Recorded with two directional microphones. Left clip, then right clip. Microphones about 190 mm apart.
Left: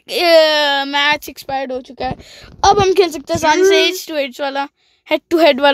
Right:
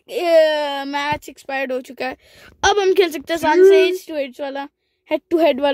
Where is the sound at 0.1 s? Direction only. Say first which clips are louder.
Left 4 dB; 5° left (ahead or behind).